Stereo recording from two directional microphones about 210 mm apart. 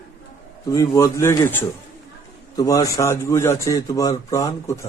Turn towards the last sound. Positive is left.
turn(degrees=15)  # may be behind; listen again after turning